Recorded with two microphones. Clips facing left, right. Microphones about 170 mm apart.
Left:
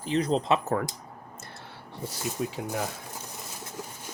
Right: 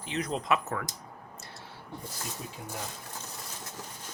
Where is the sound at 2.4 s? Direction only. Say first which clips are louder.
Left 12 dB; 90° left.